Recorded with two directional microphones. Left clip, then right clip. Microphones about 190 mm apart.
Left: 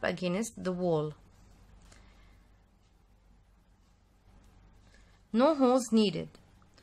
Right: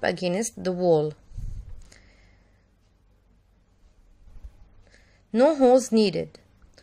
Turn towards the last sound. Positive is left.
turn(degrees=-15)  # may be behind; listen again after turning